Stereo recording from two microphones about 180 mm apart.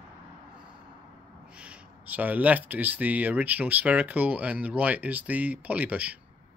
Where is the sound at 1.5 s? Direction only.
5° right (ahead or behind).